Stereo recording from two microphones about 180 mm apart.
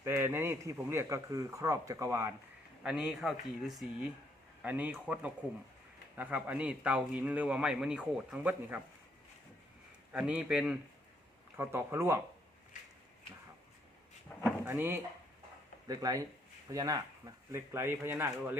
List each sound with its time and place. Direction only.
0.0 s speech: 15° right (ahead or behind)
2.8 s speech: 5° right (ahead or behind)
10.1 s speech: 5° right (ahead or behind)
14.6 s speech: 15° right (ahead or behind)